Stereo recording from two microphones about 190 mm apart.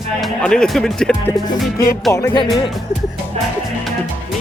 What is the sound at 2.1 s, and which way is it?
Music, 20° left (ahead or behind).